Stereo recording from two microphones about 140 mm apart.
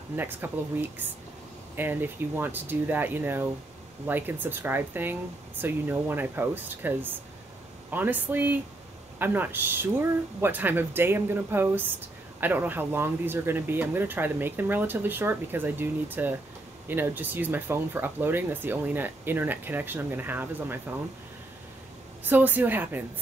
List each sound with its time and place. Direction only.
0.1 s speech: 15° right (ahead or behind)
22.2 s speech: 15° right (ahead or behind)